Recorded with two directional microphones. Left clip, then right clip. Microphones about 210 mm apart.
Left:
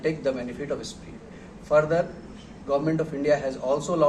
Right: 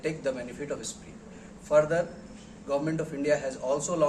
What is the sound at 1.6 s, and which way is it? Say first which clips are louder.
A man's voice: left 2 dB; 15° right (ahead or behind).